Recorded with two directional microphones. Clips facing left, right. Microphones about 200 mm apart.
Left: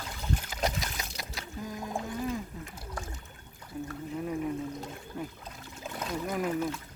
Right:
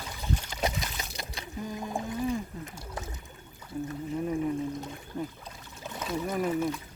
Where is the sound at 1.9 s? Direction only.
20° right (ahead or behind).